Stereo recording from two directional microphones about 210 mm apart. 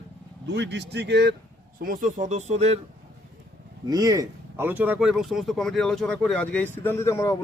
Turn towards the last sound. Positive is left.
turn(degrees=15)  # may be behind; listen again after turning